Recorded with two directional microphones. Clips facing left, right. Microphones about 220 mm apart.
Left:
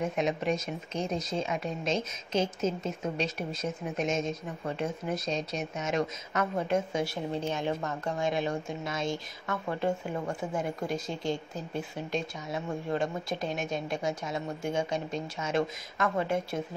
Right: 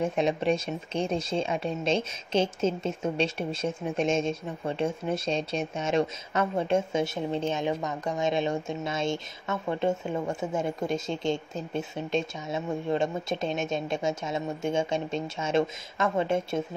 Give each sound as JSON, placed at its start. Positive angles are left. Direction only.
{"t": 0.0, "sound": "speech", "side_deg": -30}